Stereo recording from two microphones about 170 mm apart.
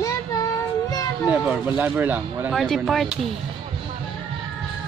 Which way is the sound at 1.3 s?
10° right (ahead or behind).